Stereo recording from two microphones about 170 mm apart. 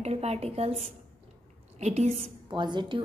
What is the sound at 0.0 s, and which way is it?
Speech, 40° right (ahead or behind).